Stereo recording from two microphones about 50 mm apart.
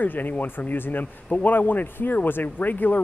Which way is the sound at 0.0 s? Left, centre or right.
Left.